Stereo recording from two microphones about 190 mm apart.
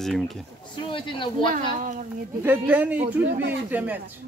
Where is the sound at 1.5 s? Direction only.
45° right (ahead or behind).